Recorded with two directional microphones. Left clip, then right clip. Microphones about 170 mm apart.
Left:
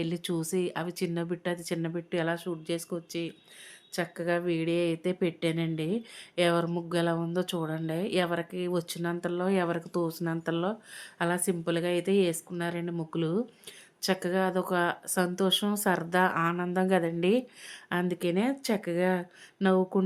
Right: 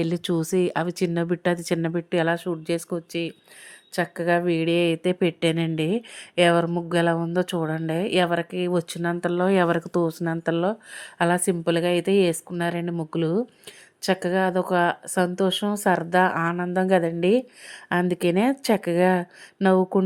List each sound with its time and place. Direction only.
0.0 s a woman's voice: 35° right (ahead or behind); by 17.4 s 20° right (ahead or behind)
17.8 s a woman's voice: 35° right (ahead or behind)